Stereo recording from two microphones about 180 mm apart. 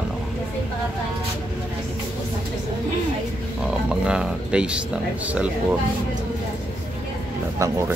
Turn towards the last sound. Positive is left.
turn(degrees=-15)  # may be behind; listen again after turning